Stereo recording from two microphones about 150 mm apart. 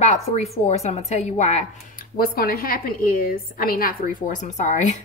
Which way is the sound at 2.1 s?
75° left (ahead or behind).